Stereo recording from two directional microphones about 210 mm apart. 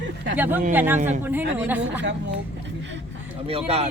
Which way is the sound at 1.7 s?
10° right (ahead or behind).